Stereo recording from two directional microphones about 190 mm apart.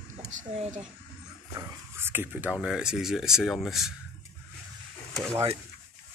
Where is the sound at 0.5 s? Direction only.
35° right (ahead or behind).